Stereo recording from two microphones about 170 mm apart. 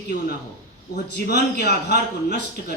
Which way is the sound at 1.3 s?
75° left (ahead or behind).